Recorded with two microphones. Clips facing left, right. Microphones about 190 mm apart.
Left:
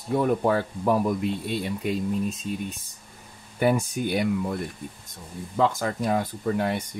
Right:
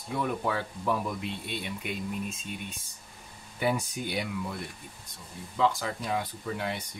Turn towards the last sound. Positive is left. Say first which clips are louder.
# left 8 dB
turn(degrees=45)  # may be behind; listen again after turning